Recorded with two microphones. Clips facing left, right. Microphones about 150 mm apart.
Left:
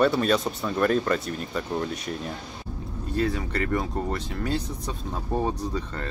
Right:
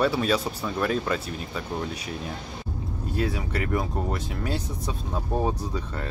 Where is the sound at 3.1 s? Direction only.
10° right (ahead or behind).